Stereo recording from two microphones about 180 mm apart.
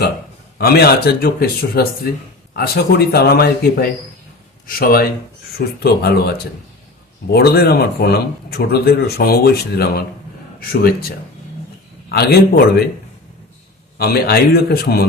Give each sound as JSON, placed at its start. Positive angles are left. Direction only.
{"t": 0.6, "sound": "speech", "side_deg": 60}
{"t": 12.0, "sound": "speech", "side_deg": 60}
{"t": 14.0, "sound": "speech", "side_deg": 60}